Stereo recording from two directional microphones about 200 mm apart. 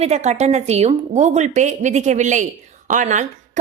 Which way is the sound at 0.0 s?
35° right (ahead or behind).